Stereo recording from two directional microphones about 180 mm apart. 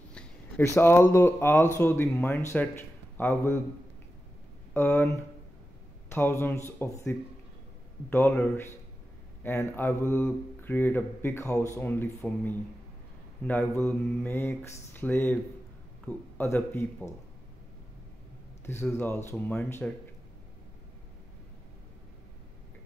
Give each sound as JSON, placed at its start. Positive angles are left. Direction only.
{"t": 0.7, "sound": "speech", "side_deg": 15}
{"t": 4.7, "sound": "speech", "side_deg": 10}
{"t": 18.7, "sound": "speech", "side_deg": 15}